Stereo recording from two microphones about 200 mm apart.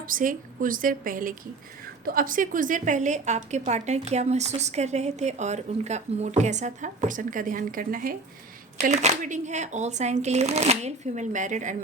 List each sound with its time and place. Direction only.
0.0 s a woman's voice: 45° right (ahead or behind)
8.8 s a woman's voice: 35° right (ahead or behind)